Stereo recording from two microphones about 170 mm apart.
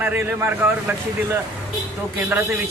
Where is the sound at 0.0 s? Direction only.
10° right (ahead or behind).